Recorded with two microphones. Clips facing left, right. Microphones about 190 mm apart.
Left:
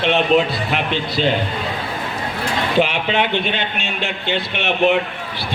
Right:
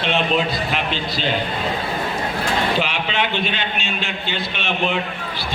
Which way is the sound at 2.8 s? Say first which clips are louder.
Left 5 dB; 55° left (ahead or behind).